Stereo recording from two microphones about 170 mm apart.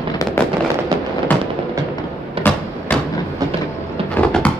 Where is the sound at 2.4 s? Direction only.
35° right (ahead or behind).